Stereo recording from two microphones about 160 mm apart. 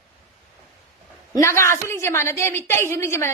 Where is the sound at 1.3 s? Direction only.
20° left (ahead or behind).